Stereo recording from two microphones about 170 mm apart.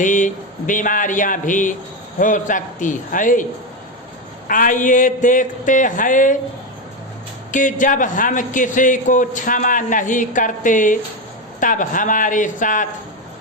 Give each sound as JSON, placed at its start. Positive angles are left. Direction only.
{"t": 0.0, "sound": "a man's voice", "side_deg": 50}
{"t": 4.4, "sound": "a man's voice", "side_deg": 50}
{"t": 7.5, "sound": "a man's voice", "side_deg": 50}